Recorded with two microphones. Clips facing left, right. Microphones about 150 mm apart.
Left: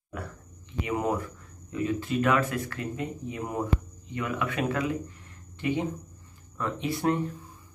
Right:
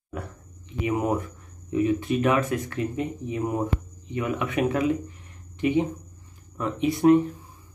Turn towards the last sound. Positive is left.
turn(degrees=-15)  # may be behind; listen again after turning